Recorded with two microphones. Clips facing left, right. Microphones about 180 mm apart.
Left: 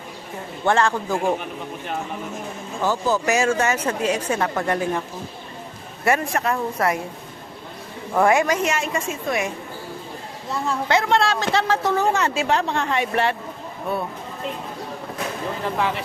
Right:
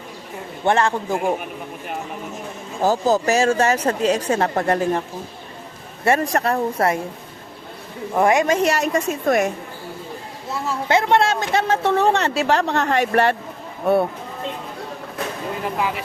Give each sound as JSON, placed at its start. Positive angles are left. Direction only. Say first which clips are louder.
{"t": 0.6, "sound": "speech", "louder": "right 1 dB", "side_deg": -20}
{"t": 2.8, "sound": "speech", "louder": "right 4 dB", "side_deg": -40}
{"t": 6.1, "sound": "speech", "louder": "right 2 dB", "side_deg": -40}
{"t": 8.1, "sound": "speech", "louder": "right 1 dB", "side_deg": -20}
{"t": 8.6, "sound": "speech", "louder": "right 4 dB", "side_deg": -40}
{"t": 10.8, "sound": "speech", "louder": "right 3 dB", "side_deg": -25}
{"t": 11.8, "sound": "a woman's voice", "louder": "right 3 dB", "side_deg": -65}
{"t": 12.0, "sound": "speech", "louder": "right 3 dB", "side_deg": -35}